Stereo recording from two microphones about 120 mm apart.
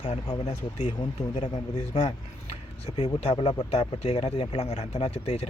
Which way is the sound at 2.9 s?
60° left (ahead or behind).